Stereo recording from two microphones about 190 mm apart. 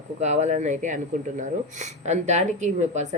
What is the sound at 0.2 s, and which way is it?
Speech, 35° right (ahead or behind).